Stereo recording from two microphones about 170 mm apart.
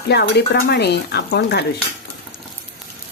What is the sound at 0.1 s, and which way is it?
Speech, 75° left (ahead or behind).